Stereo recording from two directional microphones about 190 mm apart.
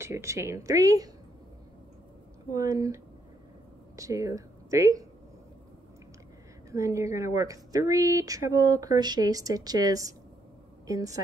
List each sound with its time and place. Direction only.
0.0 s speech: 15° right (ahead or behind)
2.5 s speech: 15° right (ahead or behind)
6.7 s a woman's voice: 15° right (ahead or behind)